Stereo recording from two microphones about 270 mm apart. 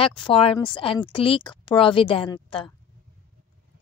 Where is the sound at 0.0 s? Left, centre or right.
Centre.